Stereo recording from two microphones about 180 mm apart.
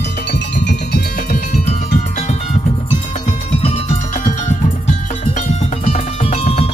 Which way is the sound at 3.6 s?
35° left (ahead or behind).